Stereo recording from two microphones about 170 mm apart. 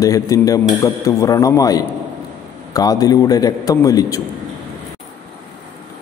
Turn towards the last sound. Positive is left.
turn(degrees=20)  # may be behind; listen again after turning